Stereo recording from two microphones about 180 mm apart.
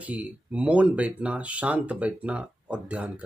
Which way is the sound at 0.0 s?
10° right (ahead or behind).